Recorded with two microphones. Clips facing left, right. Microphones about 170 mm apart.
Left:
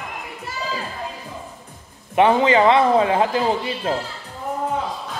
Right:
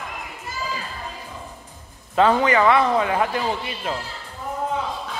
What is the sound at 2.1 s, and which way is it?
Speech, 20° left (ahead or behind).